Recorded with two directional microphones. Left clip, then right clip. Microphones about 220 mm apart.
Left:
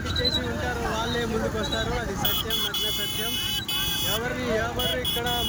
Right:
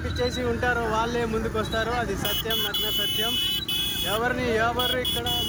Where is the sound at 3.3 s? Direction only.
20° left (ahead or behind).